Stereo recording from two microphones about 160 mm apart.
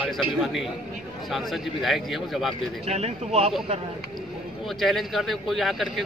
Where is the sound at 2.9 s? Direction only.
40° right (ahead or behind).